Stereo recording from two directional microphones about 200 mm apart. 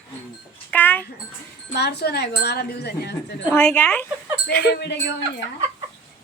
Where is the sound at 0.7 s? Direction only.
10° left (ahead or behind).